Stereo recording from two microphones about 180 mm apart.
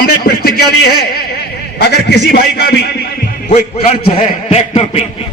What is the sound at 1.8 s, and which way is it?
Speech, 65° left (ahead or behind).